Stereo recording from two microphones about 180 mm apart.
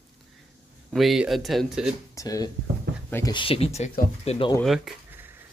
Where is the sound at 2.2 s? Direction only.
20° left (ahead or behind).